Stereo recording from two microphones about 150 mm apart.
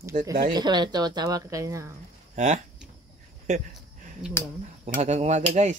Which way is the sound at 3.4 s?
60° right (ahead or behind).